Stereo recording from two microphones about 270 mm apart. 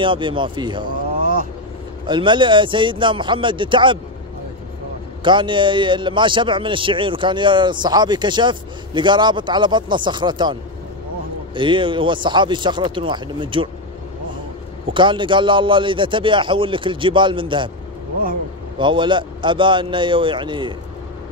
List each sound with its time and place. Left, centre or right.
0.0 s a man's voice: centre
2.0 s a man's voice: centre
5.2 s a man's voice: centre
14.9 s a man's voice: centre
18.8 s a man's voice: centre